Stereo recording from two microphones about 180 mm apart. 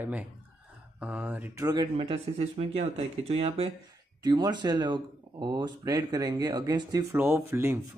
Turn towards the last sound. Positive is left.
turn(degrees=-15)  # may be behind; listen again after turning